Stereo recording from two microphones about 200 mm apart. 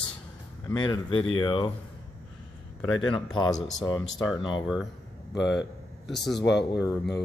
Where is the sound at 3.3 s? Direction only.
20° left (ahead or behind).